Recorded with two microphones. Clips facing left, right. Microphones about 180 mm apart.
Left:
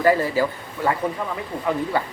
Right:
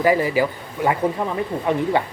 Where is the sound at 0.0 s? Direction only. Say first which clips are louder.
Right 1 dB; 15° right (ahead or behind).